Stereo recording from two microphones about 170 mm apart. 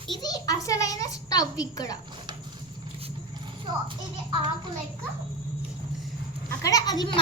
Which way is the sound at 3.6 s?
30° right (ahead or behind).